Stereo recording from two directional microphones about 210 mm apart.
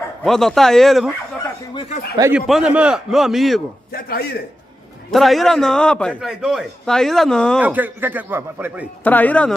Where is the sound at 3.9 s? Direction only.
50° left (ahead or behind).